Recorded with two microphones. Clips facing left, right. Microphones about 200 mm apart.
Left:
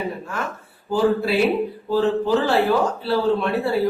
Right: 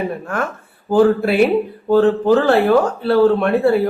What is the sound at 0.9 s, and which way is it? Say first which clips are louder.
A woman's voice: right 6 dB; 55° right (ahead or behind).